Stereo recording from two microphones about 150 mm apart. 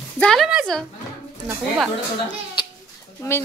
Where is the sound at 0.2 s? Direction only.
Centre (ahead or behind).